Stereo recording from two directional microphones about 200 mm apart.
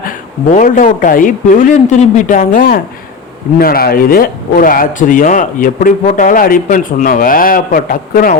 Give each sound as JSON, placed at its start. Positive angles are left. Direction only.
{"t": 0.5, "sound": "a man's voice", "side_deg": 40}